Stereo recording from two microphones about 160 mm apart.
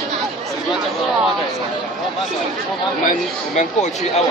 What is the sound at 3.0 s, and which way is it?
Speech, 50° left (ahead or behind).